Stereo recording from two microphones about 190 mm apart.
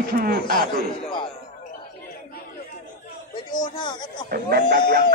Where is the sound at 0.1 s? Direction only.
50° right (ahead or behind).